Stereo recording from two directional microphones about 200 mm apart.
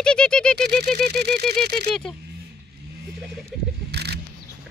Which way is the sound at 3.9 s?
55° right (ahead or behind).